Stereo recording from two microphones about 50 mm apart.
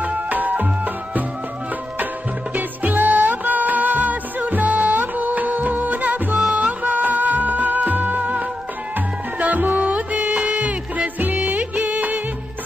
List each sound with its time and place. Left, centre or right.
0.0 s music: right
2.5 s music: right
6.5 s music of bollywood: right
9.4 s music: right